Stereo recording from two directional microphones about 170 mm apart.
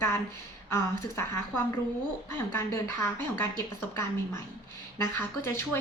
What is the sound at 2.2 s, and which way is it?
Speech, 15° left (ahead or behind).